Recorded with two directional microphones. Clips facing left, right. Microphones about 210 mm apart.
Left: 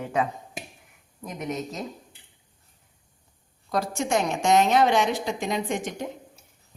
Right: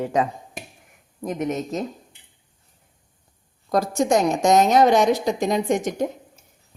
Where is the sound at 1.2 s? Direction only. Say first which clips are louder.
Right 6 dB; 45° right (ahead or behind).